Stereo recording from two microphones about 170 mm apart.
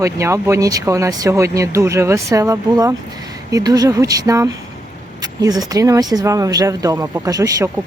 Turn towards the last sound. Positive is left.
turn(degrees=-20)  # may be behind; listen again after turning